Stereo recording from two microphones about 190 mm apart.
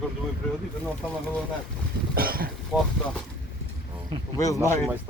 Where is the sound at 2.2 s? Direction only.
50° right (ahead or behind).